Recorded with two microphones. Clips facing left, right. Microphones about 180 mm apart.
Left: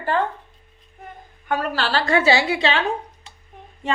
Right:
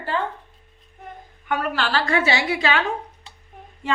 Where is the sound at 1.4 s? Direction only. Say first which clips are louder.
Left 1 dB; 35° left (ahead or behind).